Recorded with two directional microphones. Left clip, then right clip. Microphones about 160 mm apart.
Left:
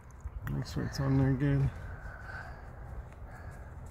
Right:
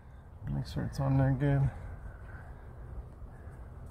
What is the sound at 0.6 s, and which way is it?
Speech, 30° right (ahead or behind).